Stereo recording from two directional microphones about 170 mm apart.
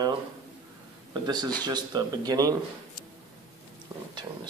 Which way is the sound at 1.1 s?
25° right (ahead or behind).